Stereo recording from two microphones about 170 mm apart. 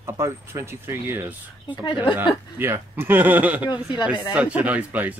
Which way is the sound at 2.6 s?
10° right (ahead or behind).